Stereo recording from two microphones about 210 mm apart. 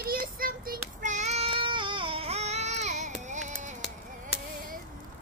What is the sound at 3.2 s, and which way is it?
Music, 35° right (ahead or behind).